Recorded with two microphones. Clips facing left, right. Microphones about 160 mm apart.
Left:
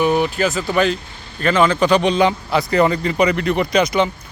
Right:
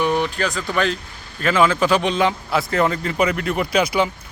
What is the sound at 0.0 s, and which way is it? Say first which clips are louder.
Speech: left 4 dB; 5° left (ahead or behind).